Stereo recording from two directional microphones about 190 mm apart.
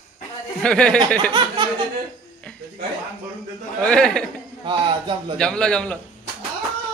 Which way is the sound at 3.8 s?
5° left (ahead or behind).